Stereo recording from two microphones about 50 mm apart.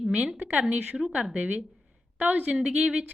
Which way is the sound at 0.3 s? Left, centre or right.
Right.